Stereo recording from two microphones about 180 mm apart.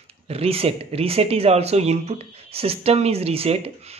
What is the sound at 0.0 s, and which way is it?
Speech, 35° right (ahead or behind).